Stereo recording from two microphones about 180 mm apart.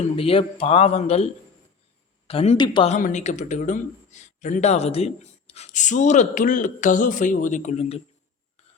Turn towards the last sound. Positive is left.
turn(degrees=40)  # may be behind; listen again after turning